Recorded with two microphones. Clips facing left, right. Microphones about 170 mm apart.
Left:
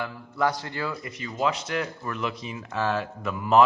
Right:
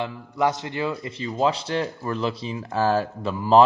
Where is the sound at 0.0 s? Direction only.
20° right (ahead or behind).